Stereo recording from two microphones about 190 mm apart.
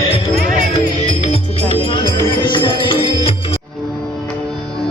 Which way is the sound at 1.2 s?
30° left (ahead or behind).